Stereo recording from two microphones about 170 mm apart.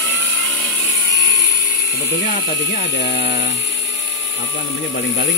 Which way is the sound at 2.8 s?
90° left.